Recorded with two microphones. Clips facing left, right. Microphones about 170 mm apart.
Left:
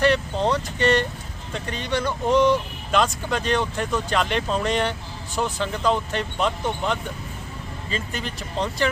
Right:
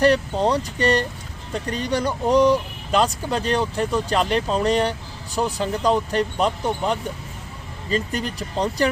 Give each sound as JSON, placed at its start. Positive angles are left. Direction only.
{"t": 0.0, "sound": "speech", "side_deg": -40}